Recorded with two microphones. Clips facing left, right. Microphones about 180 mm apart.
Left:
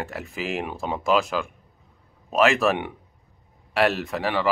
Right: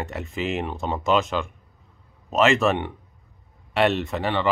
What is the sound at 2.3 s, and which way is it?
Speech, centre (ahead or behind).